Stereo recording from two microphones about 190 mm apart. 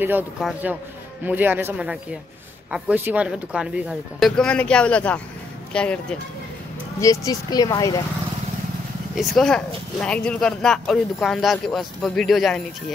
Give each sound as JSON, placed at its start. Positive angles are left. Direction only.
{"t": 0.4, "sound": "speech", "side_deg": -5}
{"t": 7.0, "sound": "speech", "side_deg": 20}
{"t": 9.1, "sound": "speech", "side_deg": 0}